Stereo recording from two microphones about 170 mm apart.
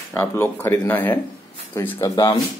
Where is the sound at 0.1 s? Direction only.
15° left (ahead or behind).